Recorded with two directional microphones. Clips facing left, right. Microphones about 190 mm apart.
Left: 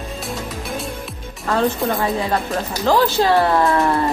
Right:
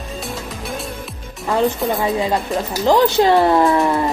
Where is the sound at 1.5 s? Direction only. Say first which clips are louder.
Right 1 dB; 15° right (ahead or behind).